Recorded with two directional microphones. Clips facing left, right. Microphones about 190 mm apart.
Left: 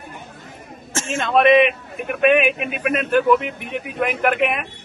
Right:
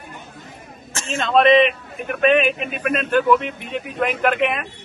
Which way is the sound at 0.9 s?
50° left (ahead or behind).